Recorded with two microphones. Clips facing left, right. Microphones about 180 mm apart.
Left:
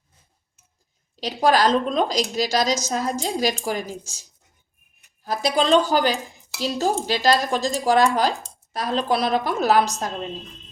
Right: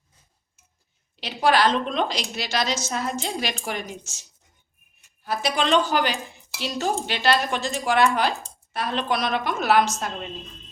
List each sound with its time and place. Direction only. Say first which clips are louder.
1.1 s a woman's voice: left 2 dB; 40° left (ahead or behind)
5.2 s a woman's voice: left 3 dB; 35° left (ahead or behind)